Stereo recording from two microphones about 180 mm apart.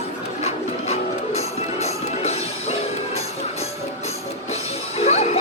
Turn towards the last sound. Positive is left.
turn(degrees=35)  # may be behind; listen again after turning